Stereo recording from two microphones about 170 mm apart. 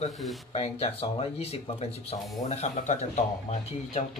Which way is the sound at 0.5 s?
35° left (ahead or behind).